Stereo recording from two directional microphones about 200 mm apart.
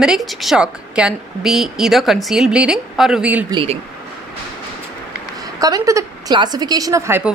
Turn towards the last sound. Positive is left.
turn(degrees=-15)  # may be behind; listen again after turning